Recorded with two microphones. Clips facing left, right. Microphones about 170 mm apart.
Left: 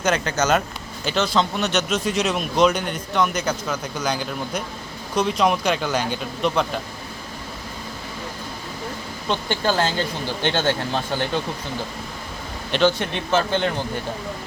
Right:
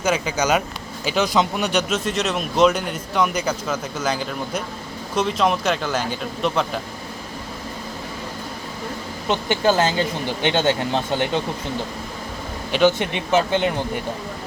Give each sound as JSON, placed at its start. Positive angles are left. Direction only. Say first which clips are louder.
{"t": 0.0, "sound": "a man's voice", "louder": "even", "side_deg": -10}
{"t": 9.3, "sound": "speech", "louder": "right 3 dB", "side_deg": -15}
{"t": 12.7, "sound": "speech", "louder": "right 2 dB", "side_deg": -15}